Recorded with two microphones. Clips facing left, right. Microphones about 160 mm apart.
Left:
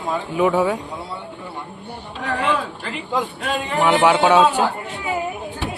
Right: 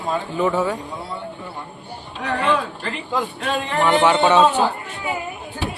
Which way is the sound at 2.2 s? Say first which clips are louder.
Right 1 dB; centre (ahead or behind).